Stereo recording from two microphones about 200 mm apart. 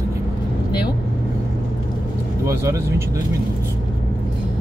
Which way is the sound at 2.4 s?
15° right (ahead or behind).